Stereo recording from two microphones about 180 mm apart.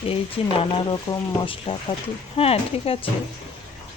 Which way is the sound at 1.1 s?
25° left (ahead or behind).